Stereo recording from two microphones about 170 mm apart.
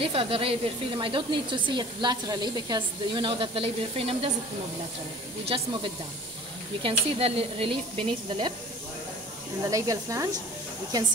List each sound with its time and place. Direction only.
0.0 s a woman's voice: 35° right (ahead or behind)
5.5 s a woman's voice: 30° right (ahead or behind)
6.8 s a woman's voice: 35° right (ahead or behind)
9.7 s a woman's voice: 20° right (ahead or behind)